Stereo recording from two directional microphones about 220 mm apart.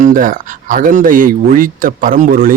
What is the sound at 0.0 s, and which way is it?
Speech, 35° right (ahead or behind).